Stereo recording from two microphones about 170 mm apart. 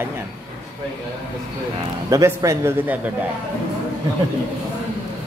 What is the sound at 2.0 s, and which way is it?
Speech, 20° right (ahead or behind).